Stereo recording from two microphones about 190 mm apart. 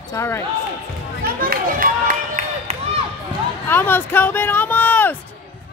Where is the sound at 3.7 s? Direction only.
10° left (ahead or behind).